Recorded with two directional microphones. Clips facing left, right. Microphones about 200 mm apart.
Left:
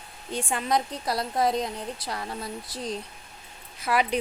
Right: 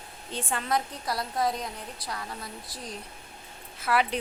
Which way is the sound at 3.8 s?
15° left (ahead or behind).